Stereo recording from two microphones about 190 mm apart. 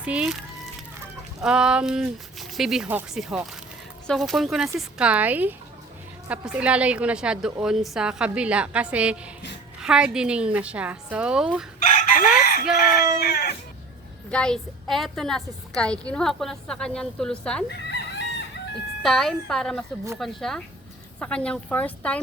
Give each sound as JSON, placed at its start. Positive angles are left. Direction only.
{"t": 0.0, "sound": "a woman's voice", "side_deg": -5}
{"t": 1.4, "sound": "a woman's voice", "side_deg": -5}
{"t": 11.9, "sound": "chicken", "side_deg": 50}
{"t": 13.1, "sound": "a sound", "side_deg": 55}
{"t": 14.3, "sound": "a woman's voice", "side_deg": 5}
{"t": 17.7, "sound": "chicken", "side_deg": 65}
{"t": 19.0, "sound": "a woman's voice", "side_deg": 0}